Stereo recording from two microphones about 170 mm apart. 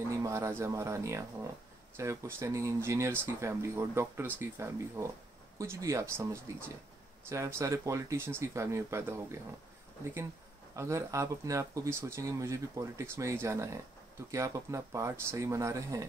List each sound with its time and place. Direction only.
0.1 s speech: 20° right (ahead or behind)
10.8 s speech: 15° right (ahead or behind)